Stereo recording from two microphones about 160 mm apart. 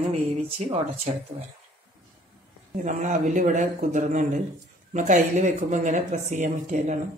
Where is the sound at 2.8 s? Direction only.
50° right (ahead or behind).